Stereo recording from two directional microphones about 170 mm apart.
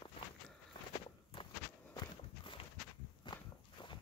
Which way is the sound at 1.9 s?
30° left (ahead or behind).